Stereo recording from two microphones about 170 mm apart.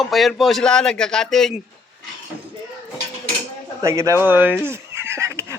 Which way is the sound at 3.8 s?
15° right (ahead or behind).